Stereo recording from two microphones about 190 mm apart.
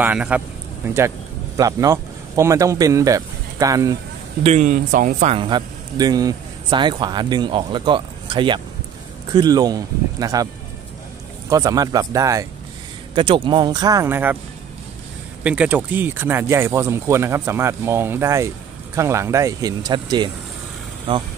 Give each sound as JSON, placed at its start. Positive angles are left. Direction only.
{"t": 0.0, "sound": "speech", "side_deg": -5}
{"t": 4.4, "sound": "speech", "side_deg": -35}
{"t": 5.3, "sound": "speech", "side_deg": -25}
{"t": 13.1, "sound": "speech", "side_deg": -25}
{"t": 15.4, "sound": "speech", "side_deg": -5}